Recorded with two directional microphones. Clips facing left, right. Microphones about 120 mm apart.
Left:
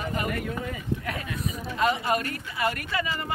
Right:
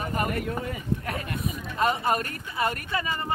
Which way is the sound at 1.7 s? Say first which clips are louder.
Even; 40° right (ahead or behind).